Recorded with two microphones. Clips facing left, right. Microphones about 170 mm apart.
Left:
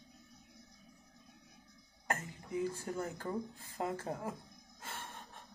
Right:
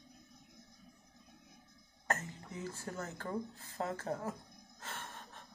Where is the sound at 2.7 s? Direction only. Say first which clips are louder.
Left 3 dB; 15° left (ahead or behind).